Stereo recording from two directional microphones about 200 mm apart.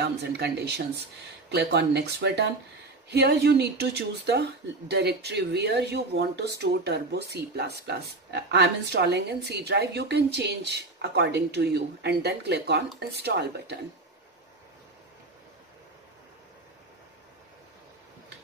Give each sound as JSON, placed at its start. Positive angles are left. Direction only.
{"t": 0.0, "sound": "speech", "side_deg": -55}